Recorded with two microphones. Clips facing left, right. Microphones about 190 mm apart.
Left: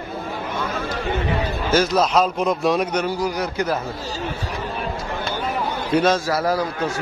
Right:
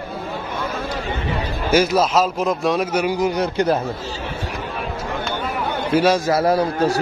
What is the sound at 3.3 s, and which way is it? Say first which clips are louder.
Speech: right 4 dB; 30° right (ahead or behind).